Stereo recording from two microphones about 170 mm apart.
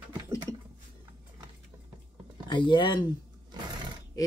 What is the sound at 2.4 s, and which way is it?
Speech, 25° left (ahead or behind).